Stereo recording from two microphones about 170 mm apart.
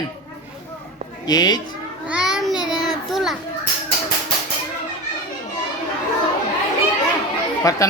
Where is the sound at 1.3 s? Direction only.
25° left (ahead or behind).